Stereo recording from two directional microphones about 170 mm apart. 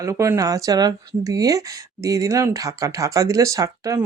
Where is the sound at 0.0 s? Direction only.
15° right (ahead or behind).